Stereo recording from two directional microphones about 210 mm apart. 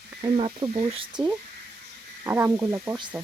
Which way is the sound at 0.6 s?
20° right (ahead or behind).